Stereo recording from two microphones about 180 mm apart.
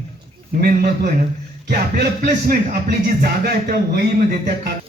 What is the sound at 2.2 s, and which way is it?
Speech, 50° right (ahead or behind).